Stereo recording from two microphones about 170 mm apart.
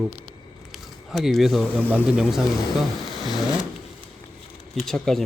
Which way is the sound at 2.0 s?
5° right (ahead or behind).